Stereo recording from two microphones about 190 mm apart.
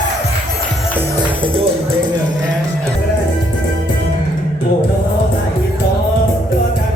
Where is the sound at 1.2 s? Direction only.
30° right (ahead or behind).